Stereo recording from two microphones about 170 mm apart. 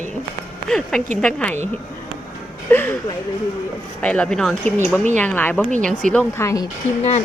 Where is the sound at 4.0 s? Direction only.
5° left (ahead or behind).